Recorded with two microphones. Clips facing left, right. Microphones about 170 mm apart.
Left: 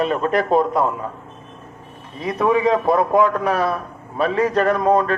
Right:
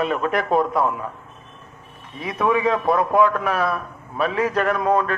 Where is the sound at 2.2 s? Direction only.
35° left (ahead or behind).